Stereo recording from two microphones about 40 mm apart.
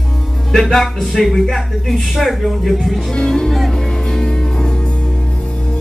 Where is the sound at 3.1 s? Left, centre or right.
Centre.